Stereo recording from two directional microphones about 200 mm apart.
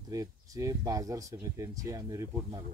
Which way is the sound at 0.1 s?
15° right (ahead or behind).